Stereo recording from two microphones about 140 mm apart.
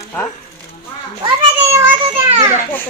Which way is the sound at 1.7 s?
15° right (ahead or behind).